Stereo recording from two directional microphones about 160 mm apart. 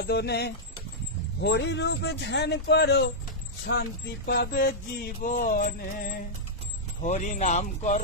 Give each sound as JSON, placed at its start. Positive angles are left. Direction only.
{"t": 0.0, "sound": "a man's voice", "side_deg": 90}
{"t": 4.3, "sound": "mantra", "side_deg": 90}
{"t": 5.3, "sound": "mantra", "side_deg": 50}
{"t": 7.0, "sound": "speech", "side_deg": 50}